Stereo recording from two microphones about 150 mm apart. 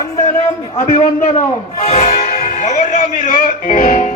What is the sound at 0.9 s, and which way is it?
A man's voice, 50° left (ahead or behind).